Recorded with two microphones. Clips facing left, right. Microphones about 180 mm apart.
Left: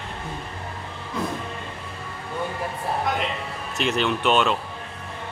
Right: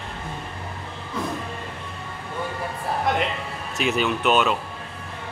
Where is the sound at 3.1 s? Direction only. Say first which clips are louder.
Right 2 dB; centre (ahead or behind).